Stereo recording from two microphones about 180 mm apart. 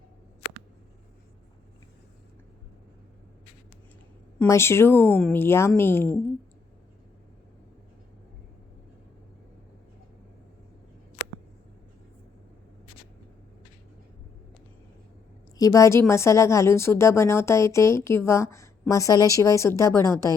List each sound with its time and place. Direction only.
4.4 s speech: 15° left (ahead or behind)
15.5 s speech: 20° left (ahead or behind)